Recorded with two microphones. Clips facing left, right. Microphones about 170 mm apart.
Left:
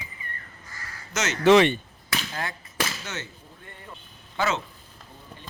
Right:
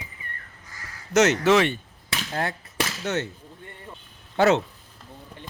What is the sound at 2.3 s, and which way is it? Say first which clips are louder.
Speech: right 5 dB; 60° right (ahead or behind).